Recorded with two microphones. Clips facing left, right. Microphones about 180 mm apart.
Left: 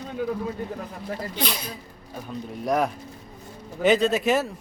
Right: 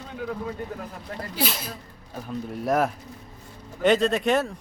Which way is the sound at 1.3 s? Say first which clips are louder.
Right 1 dB; 5° right (ahead or behind).